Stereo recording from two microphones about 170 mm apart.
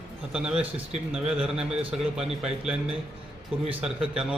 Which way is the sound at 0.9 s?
5° right (ahead or behind).